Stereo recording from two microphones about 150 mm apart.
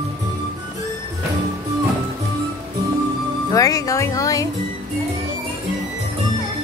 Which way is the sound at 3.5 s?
25° left (ahead or behind).